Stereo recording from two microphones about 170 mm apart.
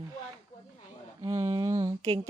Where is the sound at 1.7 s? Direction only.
40° right (ahead or behind).